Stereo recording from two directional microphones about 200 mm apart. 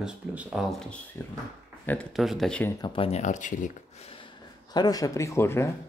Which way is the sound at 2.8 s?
25° left (ahead or behind).